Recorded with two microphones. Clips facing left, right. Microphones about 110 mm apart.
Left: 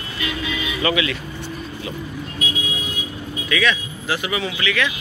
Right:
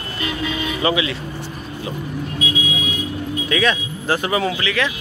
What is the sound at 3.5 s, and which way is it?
Speech, 35° right (ahead or behind).